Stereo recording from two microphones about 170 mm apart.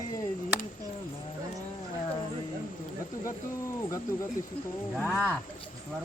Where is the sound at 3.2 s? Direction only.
20° left (ahead or behind).